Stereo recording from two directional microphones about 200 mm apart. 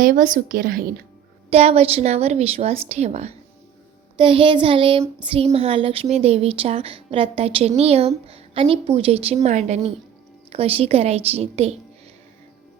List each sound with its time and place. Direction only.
0.0 s a woman's voice: 40° right (ahead or behind)
1.5 s a woman's voice: 30° right (ahead or behind)
4.2 s child singing: 25° right (ahead or behind)
7.8 s a woman's voice: 30° right (ahead or behind)
10.5 s child singing: 30° right (ahead or behind)